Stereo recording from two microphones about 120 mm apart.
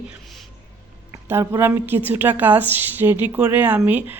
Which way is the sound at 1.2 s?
20° right (ahead or behind).